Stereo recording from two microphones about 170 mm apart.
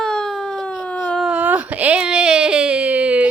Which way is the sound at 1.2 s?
10° right (ahead or behind).